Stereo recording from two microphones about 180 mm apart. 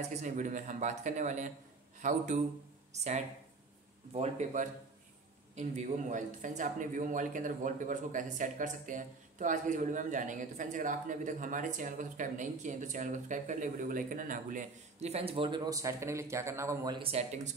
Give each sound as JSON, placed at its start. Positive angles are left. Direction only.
{"t": 0.1, "sound": "a man's voice", "side_deg": -45}